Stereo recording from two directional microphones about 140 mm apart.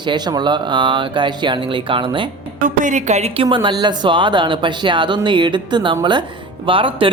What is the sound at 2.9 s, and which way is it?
Speech, 55° right (ahead or behind).